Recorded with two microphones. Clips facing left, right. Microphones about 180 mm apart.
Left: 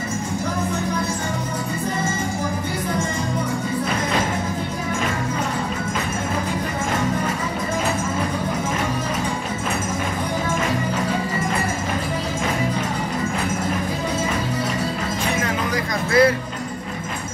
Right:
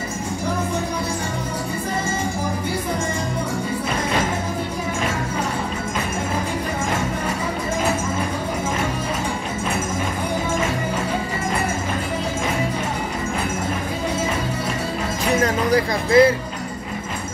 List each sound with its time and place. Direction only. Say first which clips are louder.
16.1 s music: right 2 dB; 25° right (ahead or behind)